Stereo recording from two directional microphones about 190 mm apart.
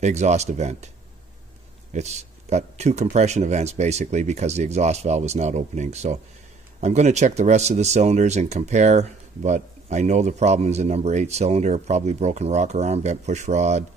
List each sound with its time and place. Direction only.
0.0 s speech: 35° right (ahead or behind)
1.9 s speech: 35° right (ahead or behind)